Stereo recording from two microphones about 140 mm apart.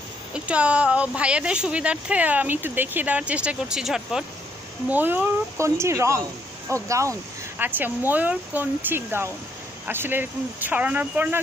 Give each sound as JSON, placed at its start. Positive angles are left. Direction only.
{"t": 0.3, "sound": "a woman's voice", "side_deg": -10}